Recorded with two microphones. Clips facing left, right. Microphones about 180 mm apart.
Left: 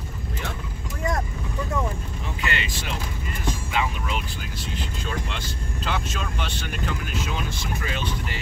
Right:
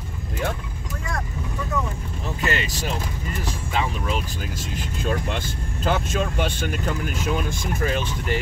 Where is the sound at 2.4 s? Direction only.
40° right (ahead or behind).